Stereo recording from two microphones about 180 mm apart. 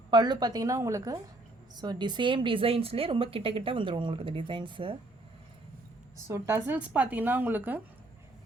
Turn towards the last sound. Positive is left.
turn(degrees=-10)  # may be behind; listen again after turning